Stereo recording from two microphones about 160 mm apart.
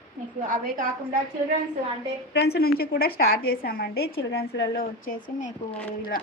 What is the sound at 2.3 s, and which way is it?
A woman's voice, 85° left.